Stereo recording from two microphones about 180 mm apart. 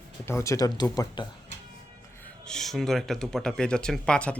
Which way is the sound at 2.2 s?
5° left (ahead or behind).